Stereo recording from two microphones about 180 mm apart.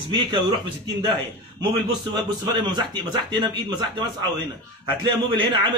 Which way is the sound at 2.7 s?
25° right (ahead or behind).